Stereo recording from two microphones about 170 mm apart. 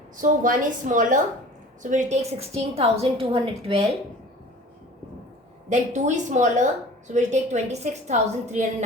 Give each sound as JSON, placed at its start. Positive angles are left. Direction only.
{"t": 0.2, "sound": "a woman's voice", "side_deg": -50}
{"t": 5.6, "sound": "a woman's voice", "side_deg": -45}